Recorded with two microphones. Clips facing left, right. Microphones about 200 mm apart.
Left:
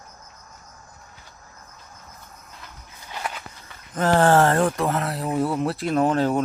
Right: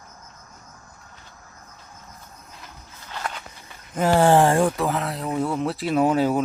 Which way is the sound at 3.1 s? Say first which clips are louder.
Even; 10° left (ahead or behind).